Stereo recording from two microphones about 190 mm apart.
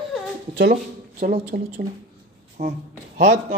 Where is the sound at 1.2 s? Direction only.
45° right (ahead or behind).